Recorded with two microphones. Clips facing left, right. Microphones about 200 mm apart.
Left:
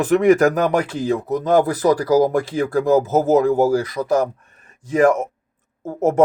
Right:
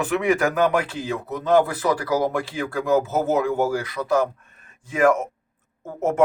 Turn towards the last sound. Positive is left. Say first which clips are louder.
# left 6 dB
turn(degrees=35)  # may be behind; listen again after turning